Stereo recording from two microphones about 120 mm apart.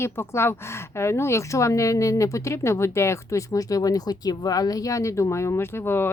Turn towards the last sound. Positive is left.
turn(degrees=20)  # may be behind; listen again after turning